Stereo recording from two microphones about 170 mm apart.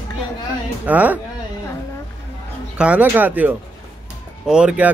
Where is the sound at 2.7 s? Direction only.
5° right (ahead or behind).